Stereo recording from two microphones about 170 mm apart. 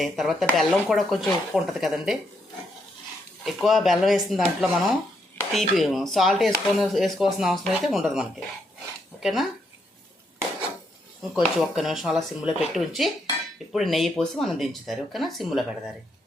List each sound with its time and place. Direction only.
0.0 s speech: centre (ahead or behind)
3.4 s speech: centre (ahead or behind)
11.2 s speech: 5° right (ahead or behind)